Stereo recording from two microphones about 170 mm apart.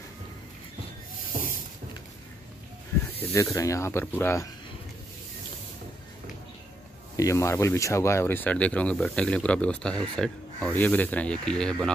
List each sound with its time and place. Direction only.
3.1 s speech: 15° left (ahead or behind)
7.2 s speech: 20° left (ahead or behind)